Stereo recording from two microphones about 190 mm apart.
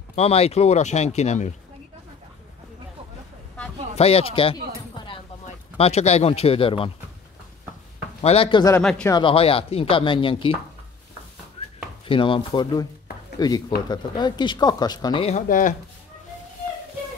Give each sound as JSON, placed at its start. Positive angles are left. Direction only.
{"t": 0.1, "sound": "speech", "side_deg": 35}
{"t": 3.9, "sound": "a sound", "side_deg": 30}
{"t": 5.8, "sound": "speech", "side_deg": 35}
{"t": 8.2, "sound": "speech", "side_deg": 30}
{"t": 8.8, "sound": "speech", "side_deg": 5}
{"t": 9.1, "sound": "speech", "side_deg": 30}
{"t": 11.6, "sound": "a sound", "side_deg": 30}
{"t": 12.1, "sound": "speech", "side_deg": 25}
{"t": 15.2, "sound": "speech", "side_deg": 40}